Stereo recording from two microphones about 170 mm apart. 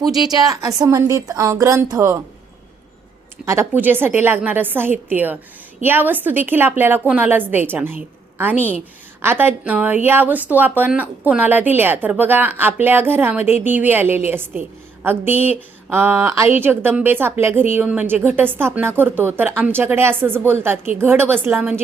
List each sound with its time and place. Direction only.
0.3 s a woman's voice: 20° right (ahead or behind)
3.4 s speech: 15° right (ahead or behind)